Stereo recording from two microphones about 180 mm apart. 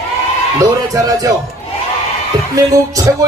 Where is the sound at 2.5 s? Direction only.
20° right (ahead or behind).